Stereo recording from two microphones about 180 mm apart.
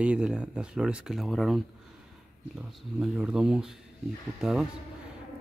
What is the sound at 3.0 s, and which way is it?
Speech, 5° right (ahead or behind).